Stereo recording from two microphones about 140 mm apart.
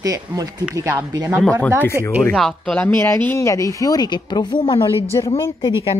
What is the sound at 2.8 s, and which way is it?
Speech, 15° left (ahead or behind).